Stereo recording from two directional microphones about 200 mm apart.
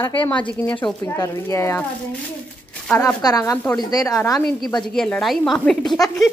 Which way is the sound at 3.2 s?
20° left (ahead or behind).